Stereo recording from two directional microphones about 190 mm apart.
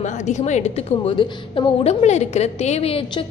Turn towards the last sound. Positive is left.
turn(degrees=30)  # may be behind; listen again after turning